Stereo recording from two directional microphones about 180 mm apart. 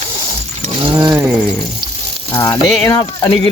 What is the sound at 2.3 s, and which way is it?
Speech, 20° left (ahead or behind).